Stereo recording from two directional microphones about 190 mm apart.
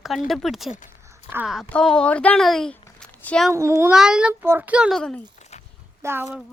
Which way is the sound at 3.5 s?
15° right (ahead or behind).